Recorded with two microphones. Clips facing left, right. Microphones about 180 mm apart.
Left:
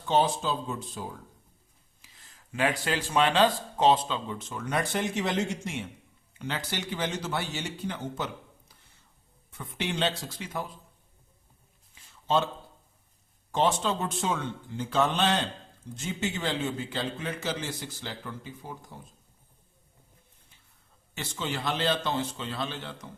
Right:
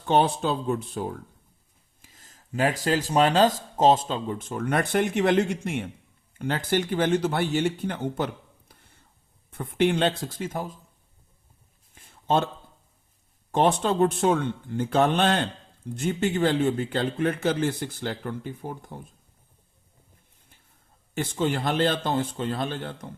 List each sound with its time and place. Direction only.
0.0 s speech: 60° right (ahead or behind)
2.0 s speech: 45° right (ahead or behind)
11.9 s a sound: 55° right (ahead or behind)
13.5 s speech: 55° right (ahead or behind)
21.2 s speech: 50° right (ahead or behind)